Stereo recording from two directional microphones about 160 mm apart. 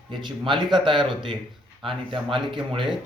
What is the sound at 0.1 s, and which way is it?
Speech, 30° right (ahead or behind).